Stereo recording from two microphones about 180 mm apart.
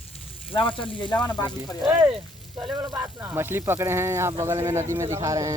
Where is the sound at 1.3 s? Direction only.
10° left (ahead or behind).